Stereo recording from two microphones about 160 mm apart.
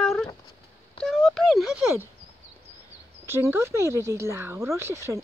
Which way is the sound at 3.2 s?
15° right (ahead or behind).